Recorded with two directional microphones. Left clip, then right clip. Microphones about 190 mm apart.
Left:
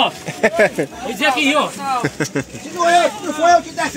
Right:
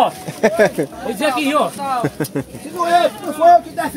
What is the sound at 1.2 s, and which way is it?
Speech, 35° right (ahead or behind).